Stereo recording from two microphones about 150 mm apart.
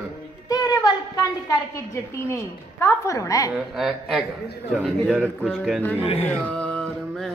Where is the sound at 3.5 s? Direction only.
Centre (ahead or behind).